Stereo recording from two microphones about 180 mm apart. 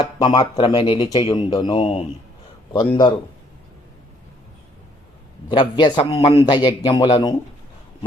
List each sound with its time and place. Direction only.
0.0 s speech: 25° left (ahead or behind)
5.5 s speech: 25° left (ahead or behind)